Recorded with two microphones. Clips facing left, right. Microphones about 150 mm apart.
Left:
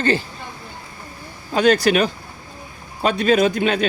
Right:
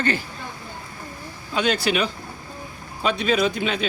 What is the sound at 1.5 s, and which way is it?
A man's voice, 45° left (ahead or behind).